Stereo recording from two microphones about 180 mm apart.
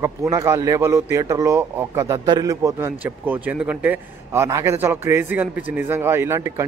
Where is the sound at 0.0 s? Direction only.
15° right (ahead or behind).